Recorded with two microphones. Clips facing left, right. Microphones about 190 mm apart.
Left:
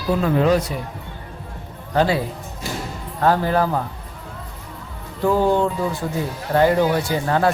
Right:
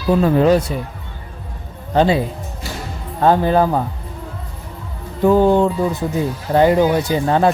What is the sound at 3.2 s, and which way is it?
Speech, 20° right (ahead or behind).